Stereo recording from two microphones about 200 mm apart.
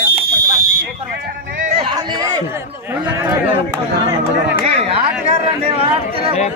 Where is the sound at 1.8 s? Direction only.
20° right (ahead or behind).